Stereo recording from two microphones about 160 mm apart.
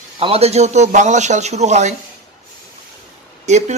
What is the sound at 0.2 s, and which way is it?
Speech, 40° right (ahead or behind).